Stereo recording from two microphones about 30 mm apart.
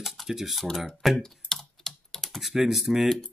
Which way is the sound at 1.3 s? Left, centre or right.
Centre.